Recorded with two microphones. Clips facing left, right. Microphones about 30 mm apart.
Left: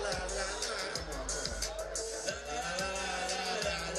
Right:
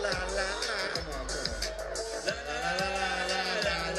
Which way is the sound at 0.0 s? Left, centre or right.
Right.